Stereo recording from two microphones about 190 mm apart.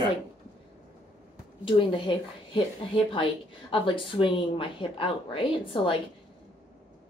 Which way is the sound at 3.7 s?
25° left (ahead or behind).